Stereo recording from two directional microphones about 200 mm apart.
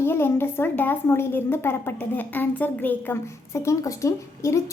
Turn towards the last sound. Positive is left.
turn(degrees=15)  # may be behind; listen again after turning